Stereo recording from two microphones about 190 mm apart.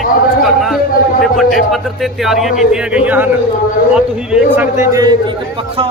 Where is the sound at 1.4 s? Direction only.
Centre (ahead or behind).